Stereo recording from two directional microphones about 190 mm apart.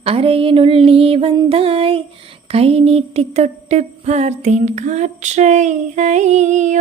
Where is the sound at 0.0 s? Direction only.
30° right (ahead or behind).